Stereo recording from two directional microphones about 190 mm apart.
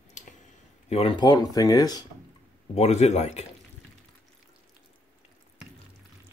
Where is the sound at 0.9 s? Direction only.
30° left (ahead or behind).